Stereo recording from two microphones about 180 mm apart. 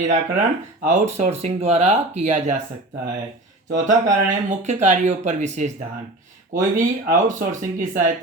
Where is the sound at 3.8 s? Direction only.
40° right (ahead or behind).